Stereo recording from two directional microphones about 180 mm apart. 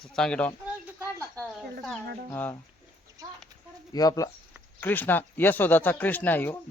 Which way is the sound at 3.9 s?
20° left (ahead or behind).